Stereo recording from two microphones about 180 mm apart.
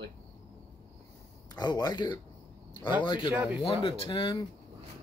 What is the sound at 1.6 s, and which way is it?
Speech, 25° left (ahead or behind).